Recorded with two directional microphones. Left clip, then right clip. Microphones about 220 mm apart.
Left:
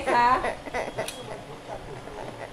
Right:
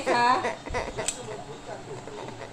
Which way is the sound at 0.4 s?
15° left (ahead or behind).